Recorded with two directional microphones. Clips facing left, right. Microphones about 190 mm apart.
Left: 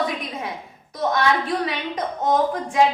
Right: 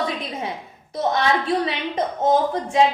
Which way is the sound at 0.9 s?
25° right (ahead or behind).